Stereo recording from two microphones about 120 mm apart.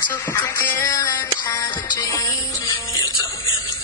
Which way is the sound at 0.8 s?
30° left (ahead or behind).